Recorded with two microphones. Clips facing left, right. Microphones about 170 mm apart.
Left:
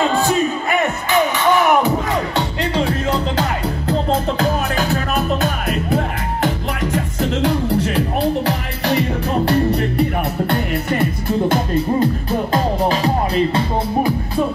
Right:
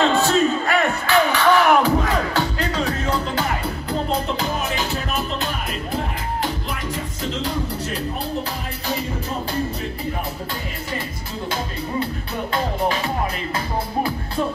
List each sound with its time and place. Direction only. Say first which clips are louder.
0.0 s music: left 1 dB; 15° left (ahead or behind)
8.5 s music: left 8 dB; 75° left (ahead or behind); by 12.1 s 55° left (ahead or behind)
12.5 s music: left 3 dB; 35° left (ahead or behind)